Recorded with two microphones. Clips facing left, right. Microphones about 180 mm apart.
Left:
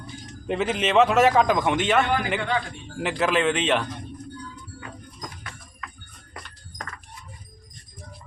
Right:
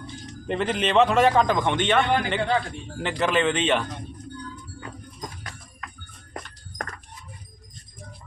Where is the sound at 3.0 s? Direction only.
5° left (ahead or behind).